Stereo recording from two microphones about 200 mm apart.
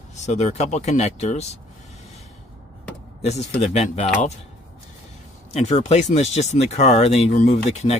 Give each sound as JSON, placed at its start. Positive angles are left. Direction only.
{"t": 0.1, "sound": "speech", "side_deg": 35}
{"t": 3.2, "sound": "speech", "side_deg": 30}
{"t": 5.5, "sound": "speech", "side_deg": 35}